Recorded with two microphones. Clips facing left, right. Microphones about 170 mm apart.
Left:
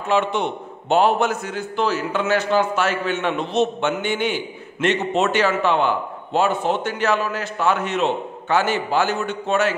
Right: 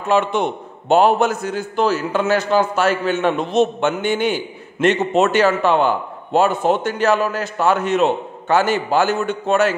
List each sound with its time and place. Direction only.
0.1 s a man's voice: 45° right (ahead or behind)